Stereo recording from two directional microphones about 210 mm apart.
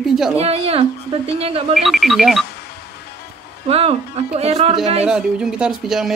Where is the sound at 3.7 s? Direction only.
30° right (ahead or behind).